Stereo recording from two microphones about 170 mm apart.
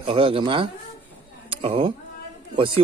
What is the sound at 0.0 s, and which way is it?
Speech, 30° right (ahead or behind).